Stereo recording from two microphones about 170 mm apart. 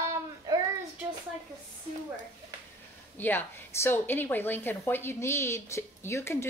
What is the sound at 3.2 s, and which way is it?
A woman's voice, 10° left (ahead or behind).